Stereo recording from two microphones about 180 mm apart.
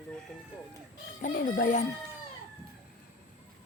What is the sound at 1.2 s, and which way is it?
Speech, 50° left (ahead or behind).